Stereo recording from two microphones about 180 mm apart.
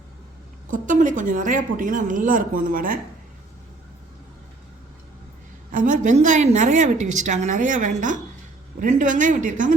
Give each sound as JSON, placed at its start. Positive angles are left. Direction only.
{"t": 0.7, "sound": "a woman's voice", "side_deg": -45}
{"t": 5.7, "sound": "a woman's voice", "side_deg": -45}